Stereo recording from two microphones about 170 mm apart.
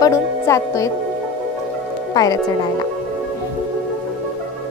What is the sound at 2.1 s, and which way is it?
Speech, 20° left (ahead or behind).